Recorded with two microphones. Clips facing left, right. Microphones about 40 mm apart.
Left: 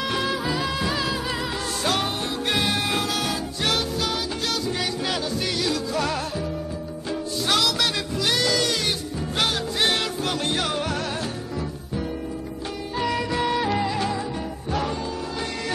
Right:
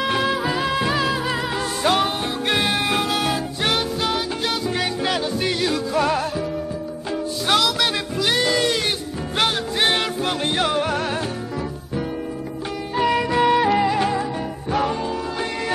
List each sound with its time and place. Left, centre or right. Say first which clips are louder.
0.0 s music: right 4 dB; centre
7.4 s music: right 3 dB; centre
8.3 s music: right 3 dB; right
12.9 s music: right 6 dB; right